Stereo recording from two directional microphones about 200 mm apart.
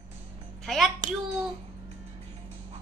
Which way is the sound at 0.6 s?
Centre (ahead or behind).